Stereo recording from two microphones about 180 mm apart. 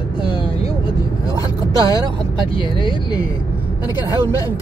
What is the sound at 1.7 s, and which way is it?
Speech, 20° left (ahead or behind).